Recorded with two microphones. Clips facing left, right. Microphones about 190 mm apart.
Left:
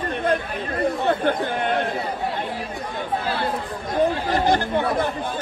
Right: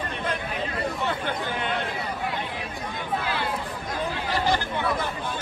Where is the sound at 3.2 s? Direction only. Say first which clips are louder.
Left 4 dB; 40° left (ahead or behind).